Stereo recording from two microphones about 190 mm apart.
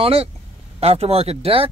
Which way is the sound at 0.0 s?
30° right (ahead or behind).